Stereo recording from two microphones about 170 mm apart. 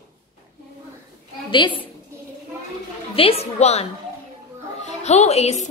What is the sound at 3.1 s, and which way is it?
A woman's voice, 35° left (ahead or behind).